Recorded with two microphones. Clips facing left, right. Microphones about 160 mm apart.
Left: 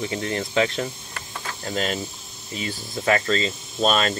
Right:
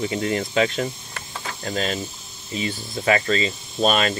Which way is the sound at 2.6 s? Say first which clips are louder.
Right 3 dB; 15° right (ahead or behind).